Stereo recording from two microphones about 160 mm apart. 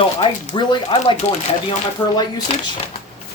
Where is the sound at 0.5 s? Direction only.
30° left (ahead or behind).